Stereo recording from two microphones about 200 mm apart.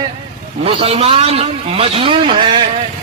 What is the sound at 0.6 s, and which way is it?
A man's voice, 30° right (ahead or behind).